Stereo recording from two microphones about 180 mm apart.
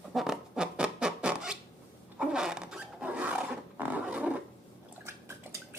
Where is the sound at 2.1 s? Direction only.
5° right (ahead or behind).